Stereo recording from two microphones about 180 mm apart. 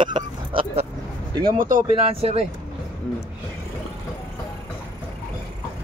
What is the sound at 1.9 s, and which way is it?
Speech, 30° right (ahead or behind).